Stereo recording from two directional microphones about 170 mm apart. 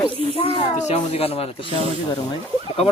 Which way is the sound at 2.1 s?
20° left (ahead or behind).